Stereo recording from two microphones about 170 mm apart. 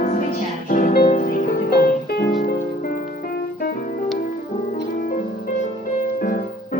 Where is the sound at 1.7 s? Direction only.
70° left (ahead or behind).